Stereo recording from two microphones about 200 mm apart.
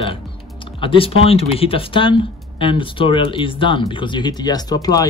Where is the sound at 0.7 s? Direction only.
25° left (ahead or behind).